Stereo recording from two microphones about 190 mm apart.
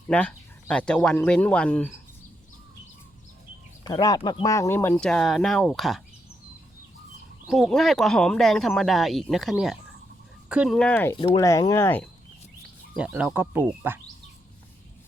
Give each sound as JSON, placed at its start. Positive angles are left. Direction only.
{"t": 0.1, "sound": "speech", "side_deg": 5}
{"t": 3.8, "sound": "speech", "side_deg": 20}
{"t": 7.4, "sound": "speech", "side_deg": 0}
{"t": 13.0, "sound": "speech", "side_deg": -10}